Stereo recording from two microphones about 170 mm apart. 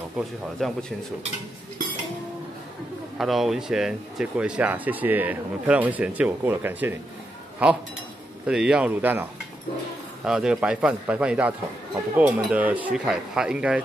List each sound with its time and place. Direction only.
0.2 s speech: centre (ahead or behind)
3.2 s speech: centre (ahead or behind)
10.2 s speech: 5° right (ahead or behind)